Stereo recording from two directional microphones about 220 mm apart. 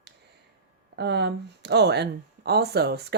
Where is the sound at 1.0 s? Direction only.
50° right (ahead or behind).